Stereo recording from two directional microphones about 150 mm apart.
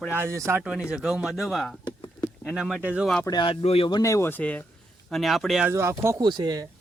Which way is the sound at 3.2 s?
30° left (ahead or behind).